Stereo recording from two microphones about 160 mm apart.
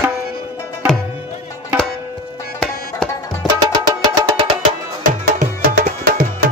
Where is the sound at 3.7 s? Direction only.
25° right (ahead or behind).